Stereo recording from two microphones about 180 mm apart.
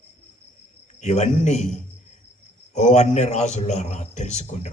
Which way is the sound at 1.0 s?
40° left (ahead or behind).